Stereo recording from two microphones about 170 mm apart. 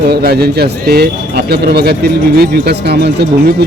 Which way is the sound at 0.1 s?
65° right (ahead or behind).